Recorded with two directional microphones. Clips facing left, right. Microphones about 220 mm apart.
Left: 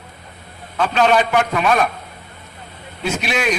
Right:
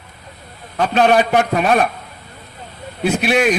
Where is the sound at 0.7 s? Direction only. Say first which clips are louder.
Right 2 dB; 40° right (ahead or behind).